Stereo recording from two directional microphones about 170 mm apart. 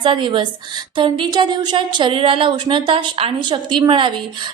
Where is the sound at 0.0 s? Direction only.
30° right (ahead or behind).